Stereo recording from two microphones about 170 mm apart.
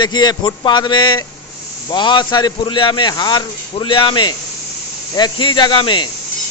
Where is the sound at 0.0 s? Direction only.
25° left (ahead or behind).